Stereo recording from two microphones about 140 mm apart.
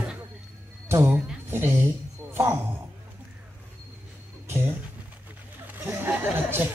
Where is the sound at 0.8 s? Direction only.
20° right (ahead or behind).